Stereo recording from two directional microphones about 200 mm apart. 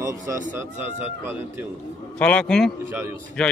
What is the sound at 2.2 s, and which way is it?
Speech, 5° left (ahead or behind).